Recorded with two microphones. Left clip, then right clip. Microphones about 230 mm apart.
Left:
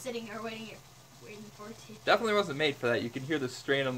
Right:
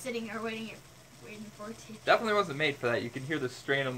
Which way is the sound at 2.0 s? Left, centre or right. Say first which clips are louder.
Right 1 dB; left.